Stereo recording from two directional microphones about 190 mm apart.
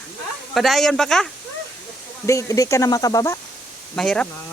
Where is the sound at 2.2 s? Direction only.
15° left (ahead or behind).